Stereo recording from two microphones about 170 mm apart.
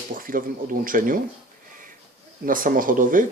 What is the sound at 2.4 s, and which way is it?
Speech, 55° right (ahead or behind).